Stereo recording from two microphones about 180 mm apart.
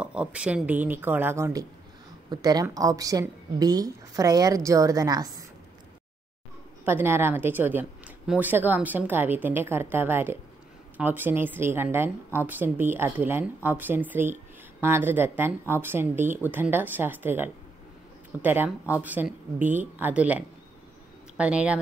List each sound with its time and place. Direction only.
0.0 s a woman's voice: 5° right (ahead or behind)
6.8 s speech: 10° right (ahead or behind)